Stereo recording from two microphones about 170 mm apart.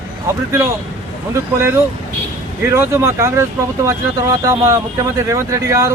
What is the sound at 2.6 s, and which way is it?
Speech, 15° right (ahead or behind).